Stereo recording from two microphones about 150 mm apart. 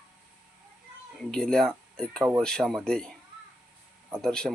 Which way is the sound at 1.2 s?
5° left (ahead or behind).